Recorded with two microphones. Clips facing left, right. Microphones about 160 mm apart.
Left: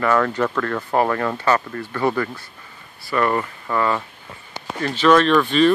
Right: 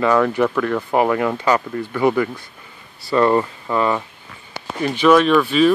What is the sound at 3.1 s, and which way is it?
Speech, 25° right (ahead or behind).